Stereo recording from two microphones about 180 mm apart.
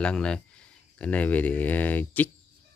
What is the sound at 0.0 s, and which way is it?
Speech, 5° left (ahead or behind).